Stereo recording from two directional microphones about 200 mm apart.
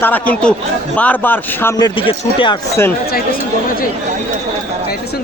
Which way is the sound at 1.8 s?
25° left (ahead or behind).